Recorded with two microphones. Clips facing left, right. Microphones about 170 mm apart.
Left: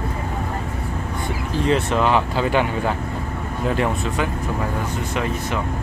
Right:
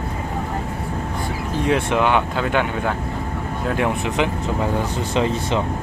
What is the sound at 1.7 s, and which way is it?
Speech, 5° right (ahead or behind).